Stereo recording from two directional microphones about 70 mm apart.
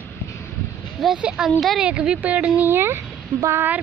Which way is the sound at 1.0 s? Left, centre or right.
Centre.